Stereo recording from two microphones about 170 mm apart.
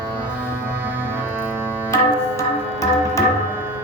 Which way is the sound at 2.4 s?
15° left (ahead or behind).